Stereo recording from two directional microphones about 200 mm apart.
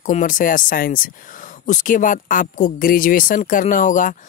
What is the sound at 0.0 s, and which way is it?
Speech, 40° left (ahead or behind).